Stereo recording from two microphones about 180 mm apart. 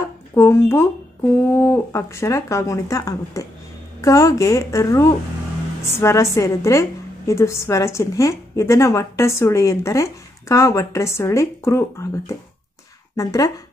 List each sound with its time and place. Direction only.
0.3 s a woman's voice: 15° left (ahead or behind)